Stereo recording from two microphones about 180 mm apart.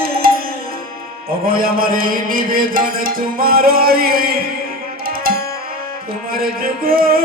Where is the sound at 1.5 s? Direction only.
55° right (ahead or behind).